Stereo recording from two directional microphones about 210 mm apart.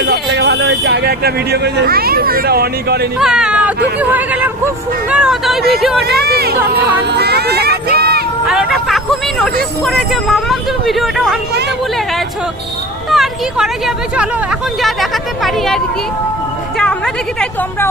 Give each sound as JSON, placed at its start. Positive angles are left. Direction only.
{"t": 0.0, "sound": "speech", "side_deg": -55}
{"t": 3.2, "sound": "speech", "side_deg": -5}
{"t": 6.2, "sound": "speech", "side_deg": -50}
{"t": 8.4, "sound": "speech", "side_deg": 0}
{"t": 13.1, "sound": "speech", "side_deg": 0}
{"t": 17.4, "sound": "speech", "side_deg": 10}